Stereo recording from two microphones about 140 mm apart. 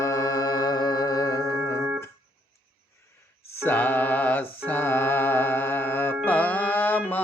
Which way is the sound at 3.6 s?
15° left (ahead or behind).